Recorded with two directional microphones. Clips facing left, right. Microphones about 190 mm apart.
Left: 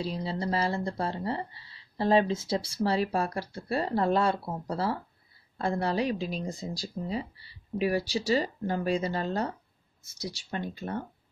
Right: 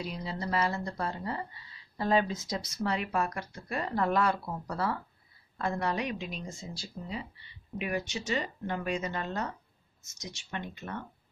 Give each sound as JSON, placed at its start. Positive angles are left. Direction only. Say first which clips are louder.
{"t": 0.0, "sound": "speech", "louder": "left 5 dB", "side_deg": 30}